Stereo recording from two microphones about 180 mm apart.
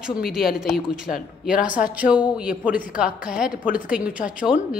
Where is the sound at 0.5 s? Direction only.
5° right (ahead or behind).